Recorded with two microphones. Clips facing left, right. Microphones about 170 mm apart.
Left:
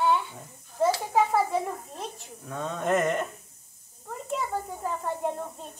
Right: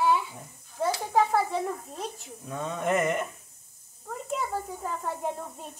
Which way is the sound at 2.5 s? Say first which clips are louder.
Left 1 dB; 10° right (ahead or behind).